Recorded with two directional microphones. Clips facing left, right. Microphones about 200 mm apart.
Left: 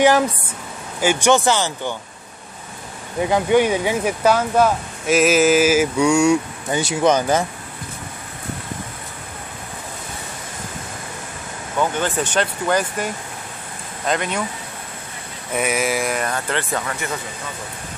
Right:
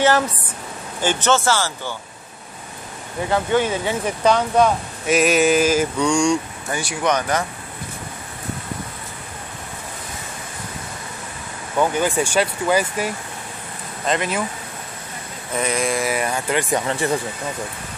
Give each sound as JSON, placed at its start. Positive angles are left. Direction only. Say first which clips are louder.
{"t": 1.0, "sound": "speech", "louder": "left 3 dB", "side_deg": 15}
{"t": 3.3, "sound": "speech", "louder": "left 3 dB", "side_deg": 15}
{"t": 6.7, "sound": "speech", "louder": "left 4 dB", "side_deg": 25}
{"t": 11.8, "sound": "speech", "louder": "right 2 dB", "side_deg": -10}
{"t": 15.5, "sound": "speech", "louder": "left 1 dB", "side_deg": 5}
{"t": 16.7, "sound": "speech", "louder": "right 5 dB", "side_deg": -30}